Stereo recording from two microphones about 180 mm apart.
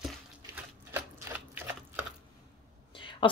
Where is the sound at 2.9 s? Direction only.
25° left (ahead or behind).